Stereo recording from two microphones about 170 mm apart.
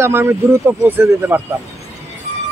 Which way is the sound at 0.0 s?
15° right (ahead or behind).